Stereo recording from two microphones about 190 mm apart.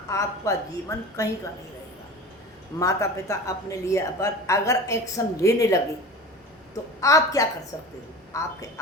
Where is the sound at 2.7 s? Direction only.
15° left (ahead or behind).